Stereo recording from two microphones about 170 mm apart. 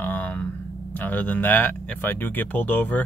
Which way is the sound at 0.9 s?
10° left (ahead or behind).